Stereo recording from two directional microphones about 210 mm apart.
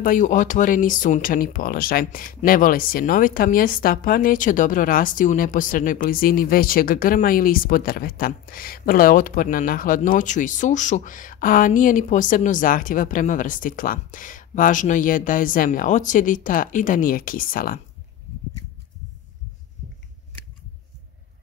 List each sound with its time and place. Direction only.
0.0 s speech: 40° left (ahead or behind)